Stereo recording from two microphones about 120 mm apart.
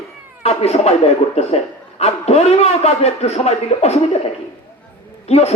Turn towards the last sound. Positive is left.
turn(degrees=60)  # may be behind; listen again after turning